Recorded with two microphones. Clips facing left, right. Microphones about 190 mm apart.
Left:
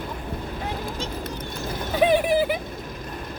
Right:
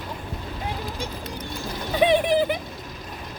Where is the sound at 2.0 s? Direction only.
5° left (ahead or behind).